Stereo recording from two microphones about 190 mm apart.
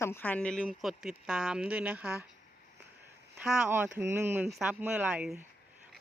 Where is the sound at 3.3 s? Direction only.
5° right (ahead or behind).